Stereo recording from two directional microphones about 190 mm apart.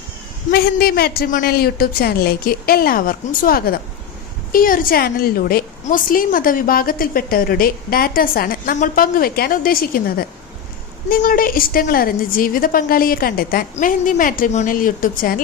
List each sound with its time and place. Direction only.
0.5 s a woman's voice: 55° left (ahead or behind)